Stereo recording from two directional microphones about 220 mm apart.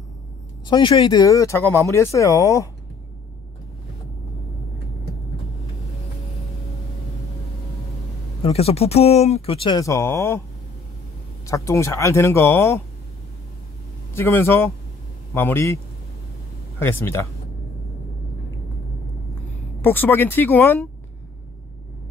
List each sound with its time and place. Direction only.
0.7 s speech: 20° left (ahead or behind)
8.4 s speech: 25° left (ahead or behind)
11.4 s speech: 15° left (ahead or behind)
14.1 s speech: 10° left (ahead or behind)
16.8 s speech: 10° left (ahead or behind)
19.8 s speech: 10° left (ahead or behind)